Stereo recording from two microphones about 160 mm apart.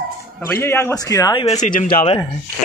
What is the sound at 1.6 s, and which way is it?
Speech, 55° left (ahead or behind).